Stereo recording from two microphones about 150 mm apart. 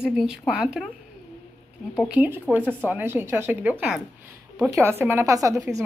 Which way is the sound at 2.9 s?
15° right (ahead or behind).